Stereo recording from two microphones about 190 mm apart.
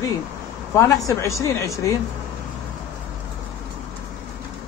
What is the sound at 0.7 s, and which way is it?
Speech, 15° left (ahead or behind).